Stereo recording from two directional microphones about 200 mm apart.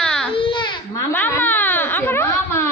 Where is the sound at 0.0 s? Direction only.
5° left (ahead or behind).